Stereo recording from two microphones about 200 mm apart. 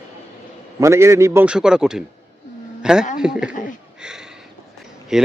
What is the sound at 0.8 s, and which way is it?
A man's voice, 15° right (ahead or behind).